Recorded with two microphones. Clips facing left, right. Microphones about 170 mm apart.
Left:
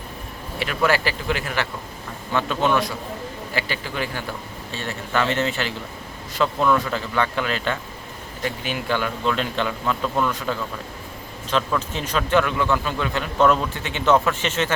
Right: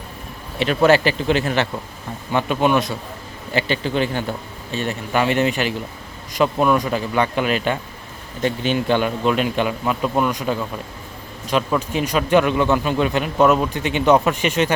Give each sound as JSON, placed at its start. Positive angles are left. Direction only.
{"t": 0.6, "sound": "speech", "side_deg": -25}
{"t": 2.3, "sound": "speech", "side_deg": -15}